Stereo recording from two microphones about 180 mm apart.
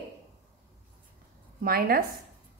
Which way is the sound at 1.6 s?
55° right (ahead or behind).